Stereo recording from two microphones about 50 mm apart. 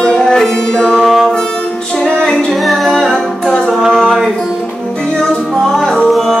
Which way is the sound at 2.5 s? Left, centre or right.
Centre.